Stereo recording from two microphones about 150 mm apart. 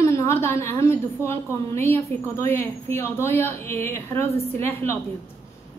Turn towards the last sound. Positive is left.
turn(degrees=15)  # may be behind; listen again after turning